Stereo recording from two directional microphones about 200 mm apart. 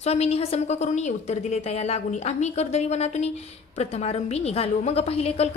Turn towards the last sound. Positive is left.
turn(degrees=30)  # may be behind; listen again after turning